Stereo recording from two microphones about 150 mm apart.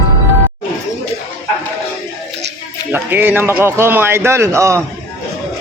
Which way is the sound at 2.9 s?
15° right (ahead or behind).